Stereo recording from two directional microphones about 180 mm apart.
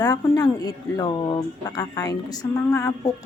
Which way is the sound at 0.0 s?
20° left (ahead or behind).